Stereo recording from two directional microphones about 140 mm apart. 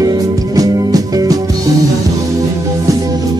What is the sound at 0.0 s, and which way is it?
Music, 25° right (ahead or behind).